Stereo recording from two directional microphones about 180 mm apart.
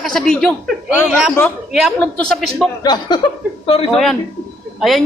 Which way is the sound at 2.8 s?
25° left (ahead or behind).